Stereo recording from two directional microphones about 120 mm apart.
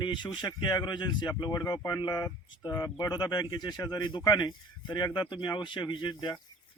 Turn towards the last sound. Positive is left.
turn(degrees=40)  # may be behind; listen again after turning